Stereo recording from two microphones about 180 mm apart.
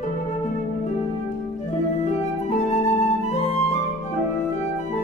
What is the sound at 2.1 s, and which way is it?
Flute, 40° left (ahead or behind).